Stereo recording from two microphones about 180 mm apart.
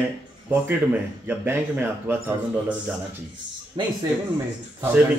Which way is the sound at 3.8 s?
25° right (ahead or behind).